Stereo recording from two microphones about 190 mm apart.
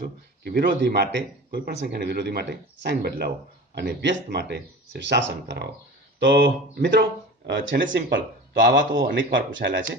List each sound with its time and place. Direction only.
0.0 s speech: 55° right (ahead or behind); by 9.8 s 75° right (ahead or behind)